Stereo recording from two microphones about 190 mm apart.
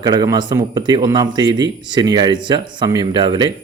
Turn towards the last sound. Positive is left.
turn(degrees=-25)  # may be behind; listen again after turning